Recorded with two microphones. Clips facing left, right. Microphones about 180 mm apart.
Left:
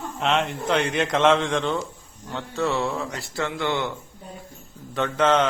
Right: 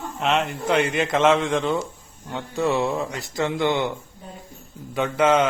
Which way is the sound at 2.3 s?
15° right (ahead or behind).